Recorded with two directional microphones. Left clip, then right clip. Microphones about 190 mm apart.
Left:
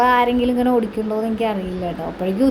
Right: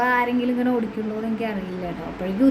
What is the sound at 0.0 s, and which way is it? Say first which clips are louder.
Child singing: left 5 dB; 20° left (ahead or behind).